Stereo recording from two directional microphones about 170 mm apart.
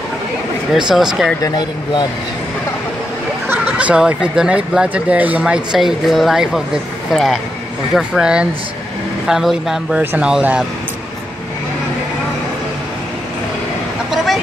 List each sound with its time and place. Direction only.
0.7 s speech: 5° right (ahead or behind)
1.4 s speech: 25° left (ahead or behind)
3.4 s speech: 5° right (ahead or behind)
14.1 s vehicle: centre (ahead or behind)